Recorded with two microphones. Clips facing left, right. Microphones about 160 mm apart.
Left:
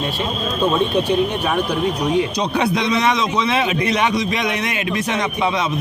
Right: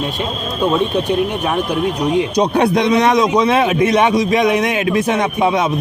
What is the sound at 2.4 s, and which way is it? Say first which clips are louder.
A man's voice: right 5 dB; 50° right (ahead or behind).